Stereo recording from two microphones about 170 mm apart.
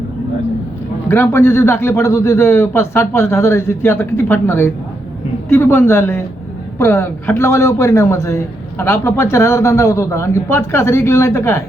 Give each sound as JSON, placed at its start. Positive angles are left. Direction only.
{"t": 1.0, "sound": "a man's voice", "side_deg": 15}